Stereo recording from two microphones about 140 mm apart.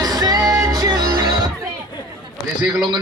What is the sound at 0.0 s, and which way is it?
Music, 25° right (ahead or behind).